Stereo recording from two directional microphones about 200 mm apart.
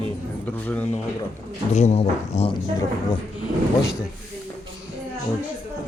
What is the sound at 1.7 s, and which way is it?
Speech, 35° left (ahead or behind).